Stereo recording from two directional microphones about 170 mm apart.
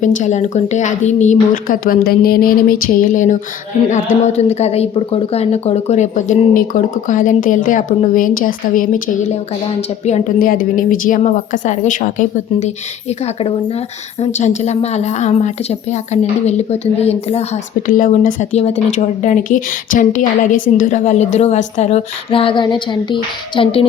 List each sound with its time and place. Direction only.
0.0 s speech: 45° left (ahead or behind)
10.4 s a woman's voice: 55° left (ahead or behind); by 17.6 s 35° left (ahead or behind)
17.8 s speech: 50° left (ahead or behind); by 23.8 s 30° left (ahead or behind)